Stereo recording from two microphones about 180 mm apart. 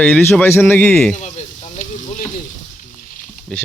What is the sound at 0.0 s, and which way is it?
A man's voice, 10° left (ahead or behind).